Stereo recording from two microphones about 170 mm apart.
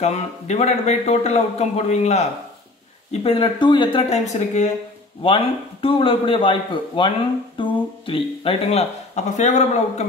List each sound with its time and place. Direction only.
0.0 s speech: 40° left (ahead or behind)